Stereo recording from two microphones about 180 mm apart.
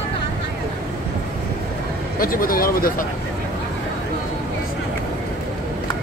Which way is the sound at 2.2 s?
50° left (ahead or behind).